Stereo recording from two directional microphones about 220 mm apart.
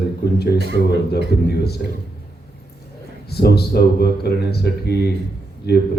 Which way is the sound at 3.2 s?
45° left (ahead or behind).